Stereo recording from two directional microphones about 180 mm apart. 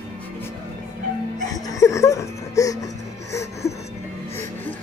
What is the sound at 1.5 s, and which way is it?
Music, 20° left (ahead or behind).